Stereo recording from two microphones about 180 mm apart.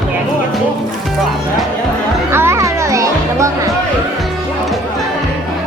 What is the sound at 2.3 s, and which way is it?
Music, 15° right (ahead or behind).